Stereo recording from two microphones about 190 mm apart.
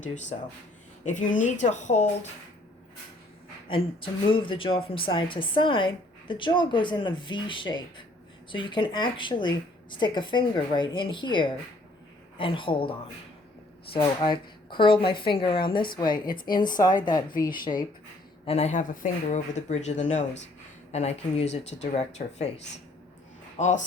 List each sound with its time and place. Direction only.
0.0 s speech: 40° left (ahead or behind)
3.7 s a woman's voice: 25° left (ahead or behind)
18.4 s speech: 35° left (ahead or behind)